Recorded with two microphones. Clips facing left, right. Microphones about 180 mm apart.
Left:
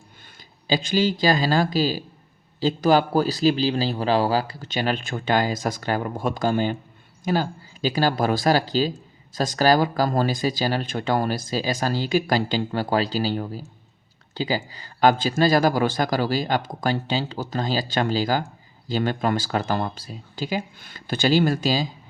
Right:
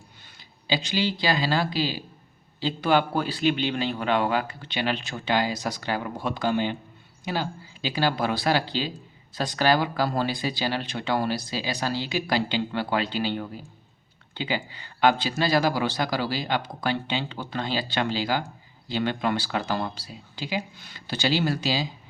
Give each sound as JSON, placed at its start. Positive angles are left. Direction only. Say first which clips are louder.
{"t": 0.7, "sound": "speech", "louder": "left 5 dB", "side_deg": 45}